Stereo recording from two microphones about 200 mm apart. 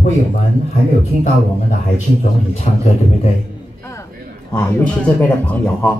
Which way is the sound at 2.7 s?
35° left (ahead or behind).